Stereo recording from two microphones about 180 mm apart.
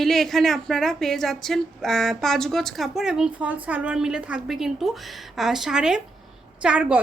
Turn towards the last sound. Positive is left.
turn(degrees=-5)  # may be behind; listen again after turning